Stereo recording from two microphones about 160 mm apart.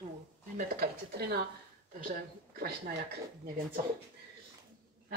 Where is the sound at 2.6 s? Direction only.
70° right (ahead or behind).